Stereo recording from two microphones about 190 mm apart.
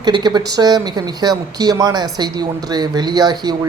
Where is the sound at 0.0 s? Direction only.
20° right (ahead or behind).